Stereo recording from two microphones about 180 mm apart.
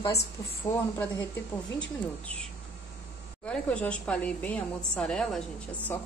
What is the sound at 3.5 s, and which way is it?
A woman's voice, 5° left (ahead or behind).